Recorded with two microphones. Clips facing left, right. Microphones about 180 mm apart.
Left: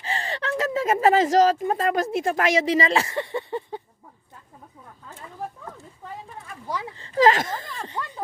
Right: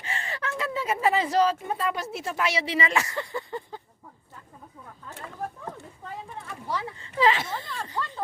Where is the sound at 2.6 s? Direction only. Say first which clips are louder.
Left 6 dB; 40° left (ahead or behind); by 3.8 s 20° left (ahead or behind).